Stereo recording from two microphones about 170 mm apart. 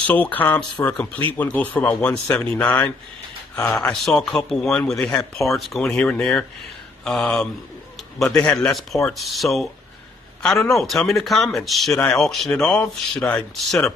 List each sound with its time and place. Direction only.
0.0 s a man's voice: 10° left (ahead or behind)